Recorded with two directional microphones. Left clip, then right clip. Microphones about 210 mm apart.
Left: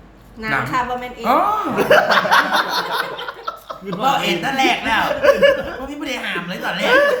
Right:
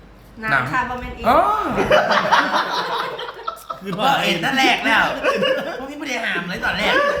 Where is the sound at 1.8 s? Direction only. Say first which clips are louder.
Left 2 dB; 55° left (ahead or behind).